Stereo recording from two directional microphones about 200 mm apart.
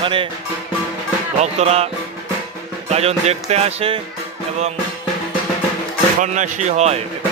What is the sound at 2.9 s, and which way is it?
Speech, 30° right (ahead or behind).